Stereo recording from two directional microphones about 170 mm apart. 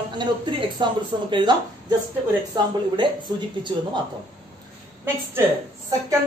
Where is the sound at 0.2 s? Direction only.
25° right (ahead or behind).